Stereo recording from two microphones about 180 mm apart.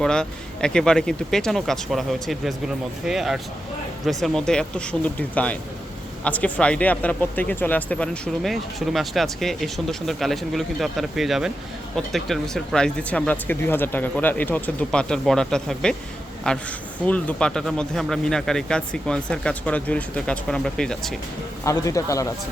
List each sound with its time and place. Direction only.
0.0 s speech: 5° left (ahead or behind)
21.6 s speech: 15° left (ahead or behind)